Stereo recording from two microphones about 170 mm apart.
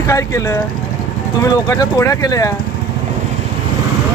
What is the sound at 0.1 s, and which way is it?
Speech, 15° left (ahead or behind).